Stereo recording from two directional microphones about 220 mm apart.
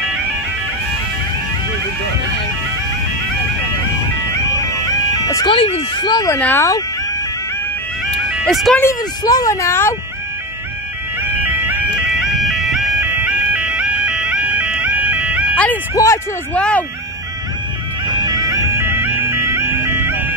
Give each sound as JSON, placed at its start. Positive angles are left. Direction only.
{"t": 5.1, "sound": "speech", "side_deg": 15}
{"t": 8.5, "sound": "speech", "side_deg": 0}
{"t": 8.8, "sound": "speech", "side_deg": 15}
{"t": 12.2, "sound": "music", "side_deg": 0}
{"t": 15.5, "sound": "speech", "side_deg": 5}
{"t": 18.2, "sound": "music", "side_deg": -15}